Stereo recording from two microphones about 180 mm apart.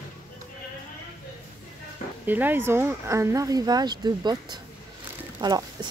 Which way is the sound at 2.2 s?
10° right (ahead or behind).